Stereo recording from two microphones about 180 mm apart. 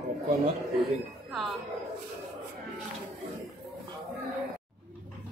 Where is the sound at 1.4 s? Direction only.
Centre (ahead or behind).